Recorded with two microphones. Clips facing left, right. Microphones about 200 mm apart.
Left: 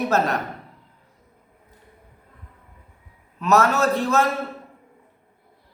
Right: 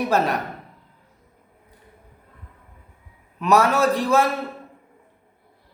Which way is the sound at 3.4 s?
10° right (ahead or behind).